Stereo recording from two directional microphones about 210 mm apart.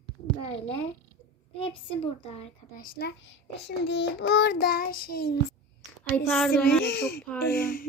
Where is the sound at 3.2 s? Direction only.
55° left (ahead or behind).